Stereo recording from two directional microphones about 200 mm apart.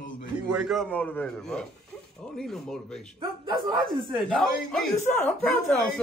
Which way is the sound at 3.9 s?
Centre (ahead or behind).